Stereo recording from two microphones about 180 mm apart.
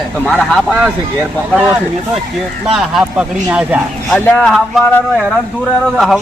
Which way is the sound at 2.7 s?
Centre (ahead or behind).